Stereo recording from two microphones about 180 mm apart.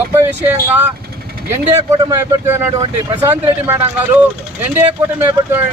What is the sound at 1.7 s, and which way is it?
A man's voice, 15° right (ahead or behind).